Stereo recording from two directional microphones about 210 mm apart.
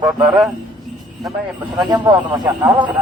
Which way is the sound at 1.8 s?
20° right (ahead or behind).